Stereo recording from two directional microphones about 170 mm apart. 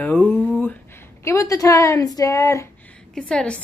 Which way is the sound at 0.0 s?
10° left (ahead or behind).